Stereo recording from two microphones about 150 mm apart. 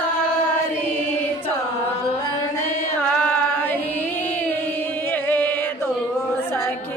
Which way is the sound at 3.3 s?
10° left (ahead or behind).